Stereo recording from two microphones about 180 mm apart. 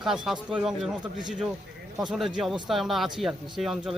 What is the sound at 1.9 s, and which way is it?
Speech, centre (ahead or behind).